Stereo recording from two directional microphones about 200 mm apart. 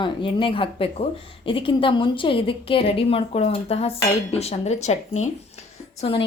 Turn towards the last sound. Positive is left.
turn(degrees=25)  # may be behind; listen again after turning